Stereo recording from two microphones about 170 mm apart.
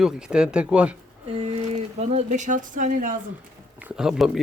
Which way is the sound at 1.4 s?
40° right (ahead or behind).